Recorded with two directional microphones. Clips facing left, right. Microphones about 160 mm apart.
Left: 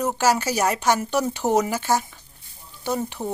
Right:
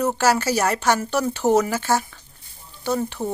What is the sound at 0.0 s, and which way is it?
Speech, 10° left (ahead or behind).